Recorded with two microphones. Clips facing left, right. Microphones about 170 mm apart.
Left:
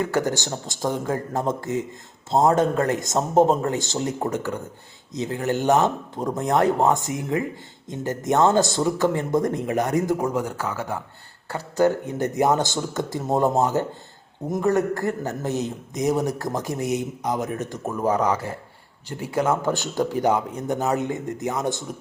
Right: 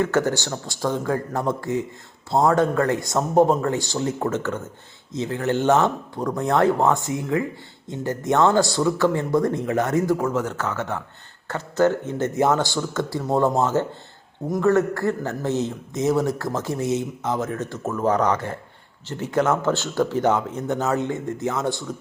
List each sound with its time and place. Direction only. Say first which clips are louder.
0.0 s a man's voice: right 2 dB; 15° left (ahead or behind)